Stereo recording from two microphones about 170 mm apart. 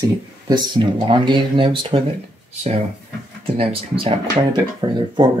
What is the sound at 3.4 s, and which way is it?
Speech, 35° right (ahead or behind).